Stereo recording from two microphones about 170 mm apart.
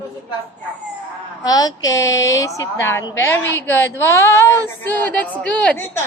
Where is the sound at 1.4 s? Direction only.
25° left (ahead or behind).